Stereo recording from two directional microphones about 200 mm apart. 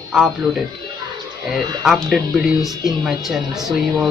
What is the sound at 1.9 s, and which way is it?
Speech, centre (ahead or behind).